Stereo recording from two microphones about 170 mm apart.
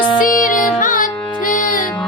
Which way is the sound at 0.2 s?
55° left (ahead or behind).